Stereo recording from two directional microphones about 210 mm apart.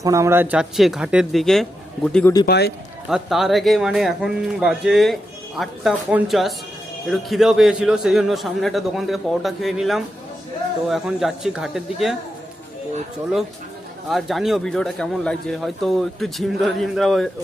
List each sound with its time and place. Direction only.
0.0 s speech: 15° right (ahead or behind); by 1.6 s centre (ahead or behind)
2.5 s speech: 50° left (ahead or behind)
3.1 s speech: centre (ahead or behind)
14.1 s speech: centre (ahead or behind)